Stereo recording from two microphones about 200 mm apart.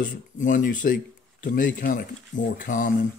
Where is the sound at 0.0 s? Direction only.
40° left (ahead or behind).